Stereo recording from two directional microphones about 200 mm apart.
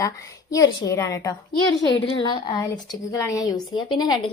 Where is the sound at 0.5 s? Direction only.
20° left (ahead or behind).